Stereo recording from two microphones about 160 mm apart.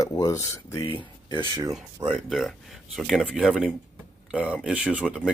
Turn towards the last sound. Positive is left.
turn(degrees=-5)  # may be behind; listen again after turning